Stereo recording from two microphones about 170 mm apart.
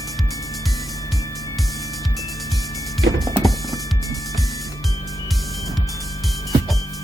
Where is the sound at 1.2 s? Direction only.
20° left (ahead or behind).